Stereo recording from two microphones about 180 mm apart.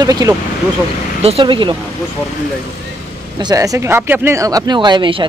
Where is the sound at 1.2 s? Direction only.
30° right (ahead or behind).